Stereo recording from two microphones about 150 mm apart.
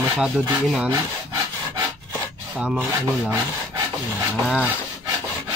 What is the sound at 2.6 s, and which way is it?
Speech, centre (ahead or behind).